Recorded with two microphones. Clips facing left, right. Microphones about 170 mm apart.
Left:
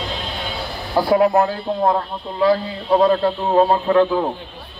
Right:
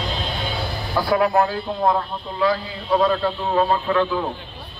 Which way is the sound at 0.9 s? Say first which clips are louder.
Left 4 dB; 35° left (ahead or behind).